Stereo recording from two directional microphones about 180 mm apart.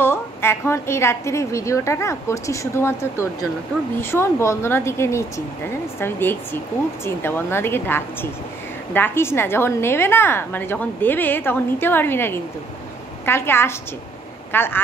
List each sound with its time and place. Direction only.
0.0 s a woman's voice: 15° left (ahead or behind)